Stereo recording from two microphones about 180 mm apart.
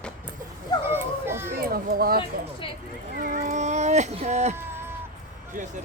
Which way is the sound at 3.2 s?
45° right (ahead or behind).